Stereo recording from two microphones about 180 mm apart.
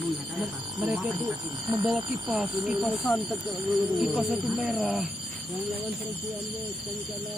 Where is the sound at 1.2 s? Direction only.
25° right (ahead or behind).